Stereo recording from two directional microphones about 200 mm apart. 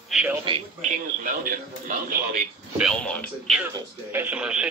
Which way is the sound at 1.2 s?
40° right (ahead or behind).